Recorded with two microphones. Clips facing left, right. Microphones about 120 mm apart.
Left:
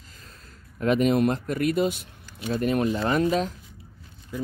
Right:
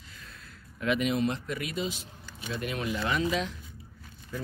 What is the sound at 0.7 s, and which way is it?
A man's voice, 40° left (ahead or behind).